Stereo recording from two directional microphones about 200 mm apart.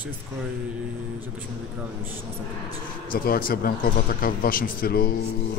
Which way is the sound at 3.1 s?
45° left (ahead or behind).